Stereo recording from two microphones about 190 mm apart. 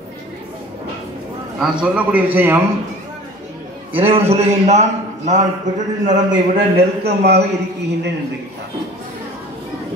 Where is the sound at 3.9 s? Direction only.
30° right (ahead or behind).